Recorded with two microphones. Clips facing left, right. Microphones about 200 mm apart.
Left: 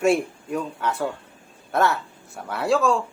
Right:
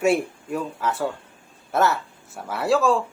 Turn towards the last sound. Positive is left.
turn(degrees=0)  # may be behind; listen again after turning